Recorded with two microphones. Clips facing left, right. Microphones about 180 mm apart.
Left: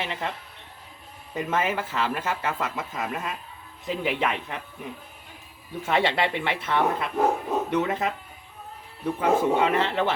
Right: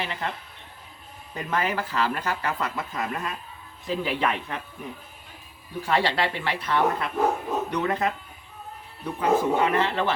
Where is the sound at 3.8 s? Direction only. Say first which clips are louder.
Even; 20° left (ahead or behind).